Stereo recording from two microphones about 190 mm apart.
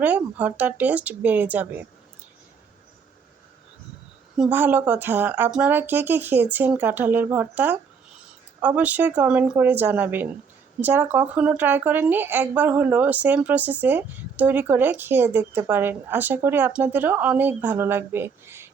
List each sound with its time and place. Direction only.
0.0 s speech: 5° right (ahead or behind)
4.4 s speech: 10° right (ahead or behind)